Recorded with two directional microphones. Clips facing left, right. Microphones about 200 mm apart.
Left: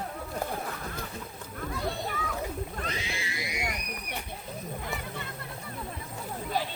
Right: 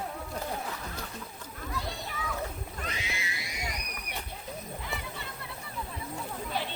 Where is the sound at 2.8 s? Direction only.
30° left (ahead or behind).